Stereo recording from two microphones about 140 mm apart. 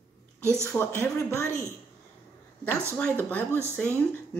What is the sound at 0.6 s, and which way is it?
Speech, 15° left (ahead or behind).